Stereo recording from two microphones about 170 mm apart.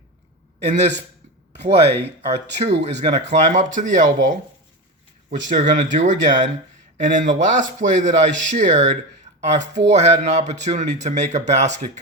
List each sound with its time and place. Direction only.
0.6 s a man's voice: 40° right (ahead or behind)
5.5 s a man's voice: 50° right (ahead or behind)